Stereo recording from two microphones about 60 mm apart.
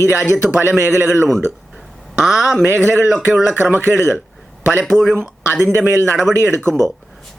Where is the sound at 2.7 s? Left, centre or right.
Right.